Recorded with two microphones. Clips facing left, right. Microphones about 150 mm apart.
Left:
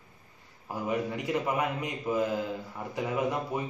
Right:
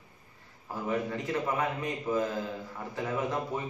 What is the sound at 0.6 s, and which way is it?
A man's voice, 15° left (ahead or behind).